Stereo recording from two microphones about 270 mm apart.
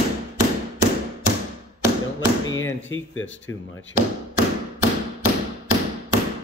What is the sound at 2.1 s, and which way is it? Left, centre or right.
Speech, left.